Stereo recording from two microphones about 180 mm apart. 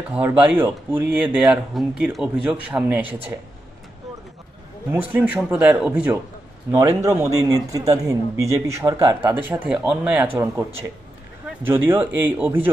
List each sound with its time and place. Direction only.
0.1 s a man's voice: 10° right (ahead or behind)
5.1 s a man's voice: 5° right (ahead or behind)